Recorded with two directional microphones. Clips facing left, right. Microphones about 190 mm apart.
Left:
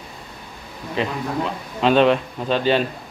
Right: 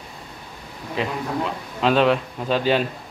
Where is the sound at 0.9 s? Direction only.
Centre (ahead or behind).